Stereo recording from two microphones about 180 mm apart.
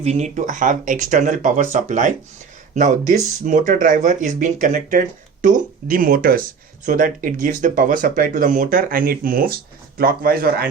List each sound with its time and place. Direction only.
0.0 s speech: 40° right (ahead or behind); by 10.7 s 55° right (ahead or behind)